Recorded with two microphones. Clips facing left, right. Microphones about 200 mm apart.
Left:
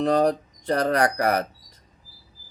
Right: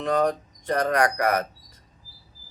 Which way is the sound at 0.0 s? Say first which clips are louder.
Left 3 dB; 35° left (ahead or behind).